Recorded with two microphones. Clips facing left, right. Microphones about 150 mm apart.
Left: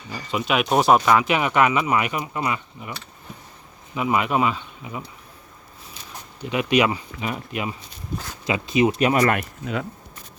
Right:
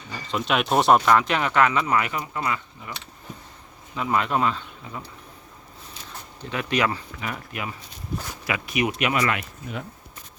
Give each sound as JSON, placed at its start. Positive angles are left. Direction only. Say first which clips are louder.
{"t": 0.1, "sound": "speech", "louder": "left 1 dB", "side_deg": 5}
{"t": 3.9, "sound": "speech", "louder": "left 2 dB", "side_deg": 10}
{"t": 6.4, "sound": "speech", "louder": "left 5 dB", "side_deg": 15}